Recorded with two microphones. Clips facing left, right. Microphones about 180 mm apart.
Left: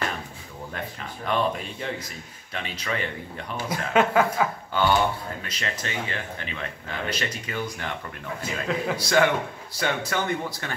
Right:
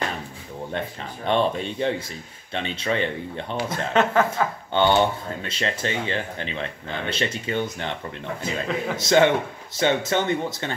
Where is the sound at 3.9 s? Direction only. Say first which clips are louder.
Even; 10° left (ahead or behind).